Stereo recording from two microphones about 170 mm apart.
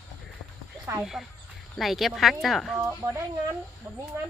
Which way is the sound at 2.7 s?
15° right (ahead or behind).